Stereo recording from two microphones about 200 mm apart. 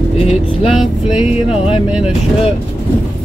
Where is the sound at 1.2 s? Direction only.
30° left (ahead or behind).